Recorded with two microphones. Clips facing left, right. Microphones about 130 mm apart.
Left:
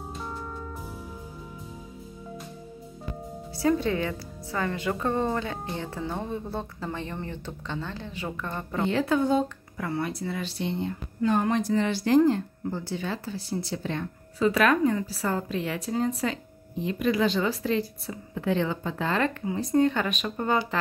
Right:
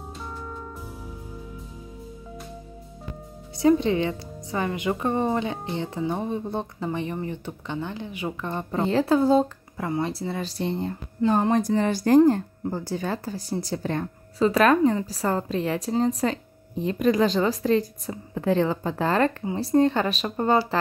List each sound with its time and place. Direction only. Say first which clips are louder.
3.5 s a woman's voice: right 5 dB; 20° right (ahead or behind)
8.7 s speech: right 3 dB; 35° right (ahead or behind)
9.8 s speech: right 3 dB; 20° right (ahead or behind)
10.1 s speech: right 2 dB; 35° right (ahead or behind)